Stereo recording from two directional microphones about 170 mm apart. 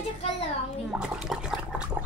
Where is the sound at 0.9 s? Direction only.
5° right (ahead or behind).